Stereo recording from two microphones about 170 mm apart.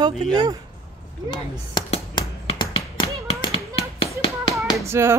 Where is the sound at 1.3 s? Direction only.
25° left (ahead or behind).